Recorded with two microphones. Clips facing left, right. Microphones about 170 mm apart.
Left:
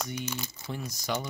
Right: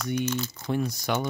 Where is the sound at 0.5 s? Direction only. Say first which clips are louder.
Right 10 dB; 60° right (ahead or behind).